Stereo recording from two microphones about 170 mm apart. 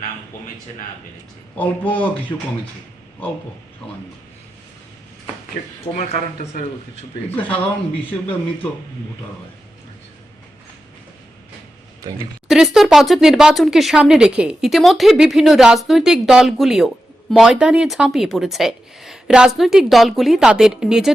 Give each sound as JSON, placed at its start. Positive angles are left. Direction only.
{"t": 1.5, "sound": "speech", "side_deg": 10}
{"t": 2.3, "sound": "speech", "side_deg": 20}
{"t": 5.8, "sound": "speech", "side_deg": 40}
{"t": 12.5, "sound": "speech", "side_deg": 0}